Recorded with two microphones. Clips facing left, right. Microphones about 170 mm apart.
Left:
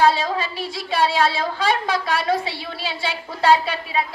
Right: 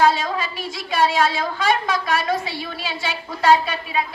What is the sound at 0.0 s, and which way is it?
A woman's voice, 30° left (ahead or behind).